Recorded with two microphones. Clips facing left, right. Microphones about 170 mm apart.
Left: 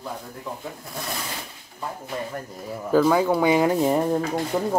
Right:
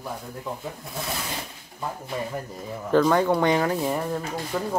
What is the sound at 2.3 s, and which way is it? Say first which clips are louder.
Speech: even; 5° left (ahead or behind).